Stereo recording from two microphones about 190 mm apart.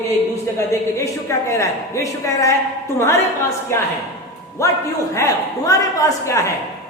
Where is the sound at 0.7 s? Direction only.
15° left (ahead or behind).